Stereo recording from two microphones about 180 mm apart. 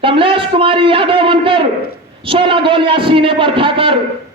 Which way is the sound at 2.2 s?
30° right (ahead or behind).